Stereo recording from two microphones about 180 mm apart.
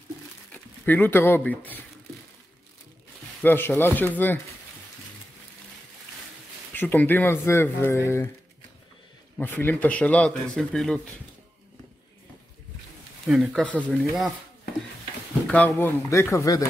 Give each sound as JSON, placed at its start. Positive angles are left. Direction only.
{"t": 0.5, "sound": "speech", "side_deg": 10}
{"t": 3.4, "sound": "speech", "side_deg": 10}
{"t": 6.7, "sound": "speech", "side_deg": 10}
{"t": 9.4, "sound": "speech", "side_deg": 10}
{"t": 13.3, "sound": "speech", "side_deg": 0}
{"t": 15.4, "sound": "speech", "side_deg": 5}